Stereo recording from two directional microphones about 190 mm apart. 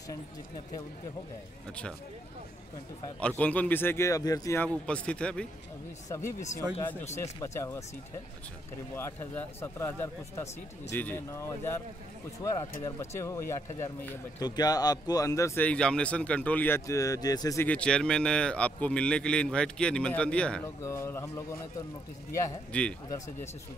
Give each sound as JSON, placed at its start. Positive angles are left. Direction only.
{"t": 3.2, "sound": "speech", "side_deg": 5}
{"t": 4.6, "sound": "a man's voice", "side_deg": 5}
{"t": 6.0, "sound": "speech", "side_deg": 15}
{"t": 8.9, "sound": "speech", "side_deg": 10}
{"t": 17.6, "sound": "a man's voice", "side_deg": 5}